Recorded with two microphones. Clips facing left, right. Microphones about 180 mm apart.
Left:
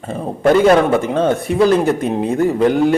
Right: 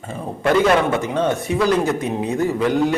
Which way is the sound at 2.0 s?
55° left (ahead or behind).